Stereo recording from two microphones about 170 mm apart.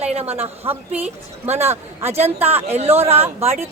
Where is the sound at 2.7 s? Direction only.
40° right (ahead or behind).